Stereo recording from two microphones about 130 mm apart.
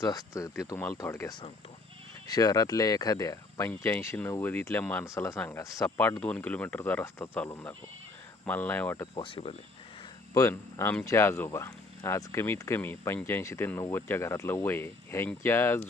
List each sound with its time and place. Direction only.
0.0 s speech: 25° left (ahead or behind)
3.7 s speech: 15° left (ahead or behind)
9.1 s speech: 40° left (ahead or behind)
10.3 s speech: 20° left (ahead or behind)